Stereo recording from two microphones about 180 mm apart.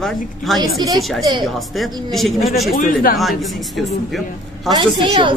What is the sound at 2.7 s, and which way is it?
Speech, 50° left (ahead or behind).